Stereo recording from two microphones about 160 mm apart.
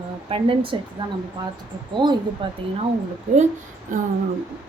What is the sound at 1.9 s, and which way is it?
Speech, 30° right (ahead or behind).